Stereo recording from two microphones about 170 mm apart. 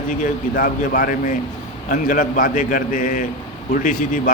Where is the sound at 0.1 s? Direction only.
50° left (ahead or behind).